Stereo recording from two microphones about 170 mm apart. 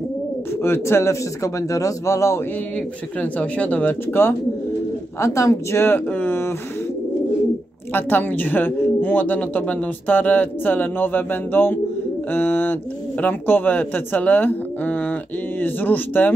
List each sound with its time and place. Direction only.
0.6 s speech: 15° left (ahead or behind)
7.9 s speech: 10° left (ahead or behind)